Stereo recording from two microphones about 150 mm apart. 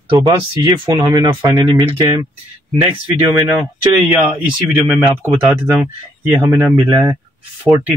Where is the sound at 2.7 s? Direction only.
5° right (ahead or behind).